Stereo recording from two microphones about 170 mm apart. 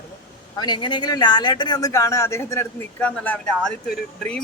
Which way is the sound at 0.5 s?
25° left (ahead or behind).